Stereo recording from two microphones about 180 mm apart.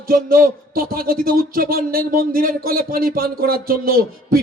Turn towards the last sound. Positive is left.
turn(degrees=-55)  # may be behind; listen again after turning